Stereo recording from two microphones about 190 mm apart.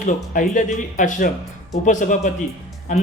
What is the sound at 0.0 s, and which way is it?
Speech, 45° left (ahead or behind).